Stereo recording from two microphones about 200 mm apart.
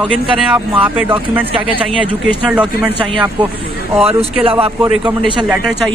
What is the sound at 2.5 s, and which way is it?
Speech, 5° right (ahead or behind).